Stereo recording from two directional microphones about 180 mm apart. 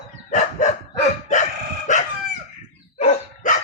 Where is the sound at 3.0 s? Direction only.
40° left (ahead or behind).